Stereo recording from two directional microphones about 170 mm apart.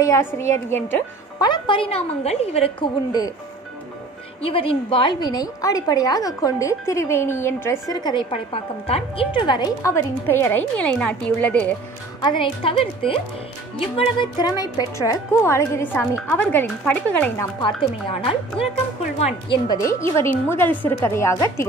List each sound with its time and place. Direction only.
0.0 s speech: 15° left (ahead or behind)
1.4 s a woman's voice: 30° left (ahead or behind)
3.1 s a woman's voice: 20° left (ahead or behind)
4.4 s a woman's voice: 35° left (ahead or behind); by 11.7 s 5° left (ahead or behind)
12.2 s a woman's voice: 30° left (ahead or behind); by 17.3 s 5° left (ahead or behind)
17.4 s a woman's voice: 25° left (ahead or behind)
19.1 s a woman's voice: 40° left (ahead or behind)
19.7 s speech: 20° left (ahead or behind)